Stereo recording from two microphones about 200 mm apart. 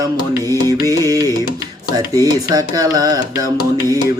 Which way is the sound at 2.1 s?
20° right (ahead or behind).